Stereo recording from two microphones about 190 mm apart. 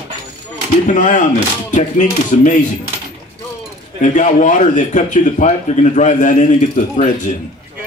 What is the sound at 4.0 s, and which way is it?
A man's voice, 40° left (ahead or behind).